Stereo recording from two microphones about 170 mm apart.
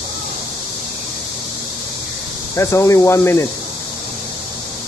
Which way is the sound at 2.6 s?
15° left (ahead or behind).